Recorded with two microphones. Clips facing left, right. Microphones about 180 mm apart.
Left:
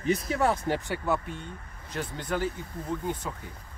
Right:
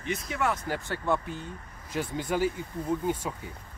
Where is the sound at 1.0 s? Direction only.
Centre (ahead or behind).